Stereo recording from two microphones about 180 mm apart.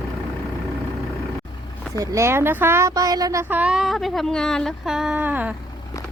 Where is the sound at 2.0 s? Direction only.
20° right (ahead or behind).